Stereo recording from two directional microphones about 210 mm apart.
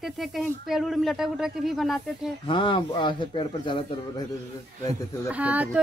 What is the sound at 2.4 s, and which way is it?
Speech, 25° left (ahead or behind).